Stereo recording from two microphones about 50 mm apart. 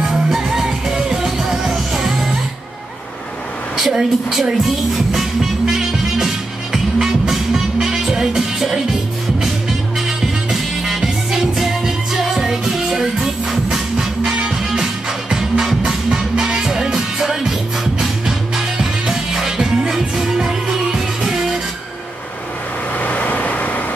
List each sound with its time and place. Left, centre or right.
0.0 s music: centre
3.7 s music: centre
9.9 s music: centre
22.9 s vehicle: left